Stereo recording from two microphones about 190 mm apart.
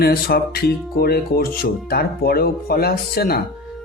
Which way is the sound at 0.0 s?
55° left (ahead or behind).